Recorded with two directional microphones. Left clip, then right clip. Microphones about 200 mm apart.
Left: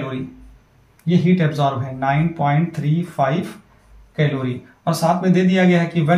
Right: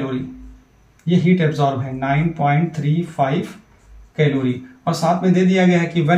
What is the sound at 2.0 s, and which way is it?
Speech, 15° left (ahead or behind).